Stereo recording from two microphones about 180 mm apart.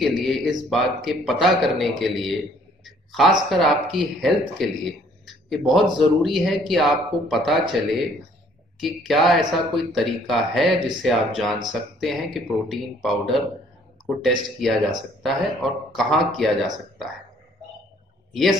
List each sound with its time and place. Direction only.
0.0 s a man's voice: centre (ahead or behind)
18.3 s speech: centre (ahead or behind)